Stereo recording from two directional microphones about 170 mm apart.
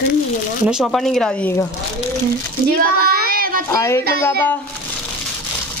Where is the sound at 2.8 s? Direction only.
60° right (ahead or behind).